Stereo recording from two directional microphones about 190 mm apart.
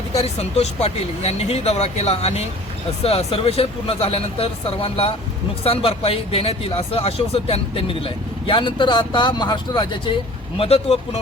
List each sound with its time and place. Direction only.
0.2 s speech: 35° left (ahead or behind)